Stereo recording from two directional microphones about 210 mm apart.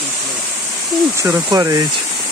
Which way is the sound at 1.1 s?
5° right (ahead or behind).